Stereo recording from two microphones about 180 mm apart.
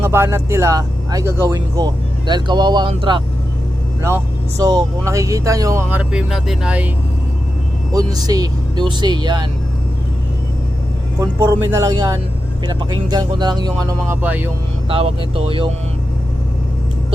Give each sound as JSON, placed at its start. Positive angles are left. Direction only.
{"t": 0.0, "sound": "speech", "side_deg": -15}
{"t": 4.0, "sound": "speech", "side_deg": -15}
{"t": 7.9, "sound": "speech", "side_deg": -20}
{"t": 11.2, "sound": "speech", "side_deg": -15}
{"t": 13.8, "sound": "speech", "side_deg": -10}
{"t": 14.8, "sound": "speech", "side_deg": -30}